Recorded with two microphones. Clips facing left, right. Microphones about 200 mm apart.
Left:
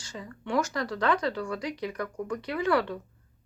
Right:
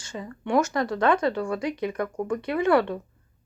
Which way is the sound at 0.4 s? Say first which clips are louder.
Right 5 dB; 25° right (ahead or behind).